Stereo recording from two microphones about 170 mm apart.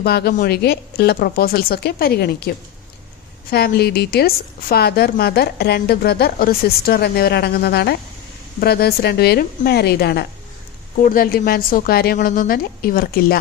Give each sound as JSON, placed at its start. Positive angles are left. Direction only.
{"t": 0.0, "sound": "a woman's voice", "side_deg": 70}
{"t": 3.5, "sound": "a woman's voice", "side_deg": 70}
{"t": 10.9, "sound": "a woman's voice", "side_deg": 55}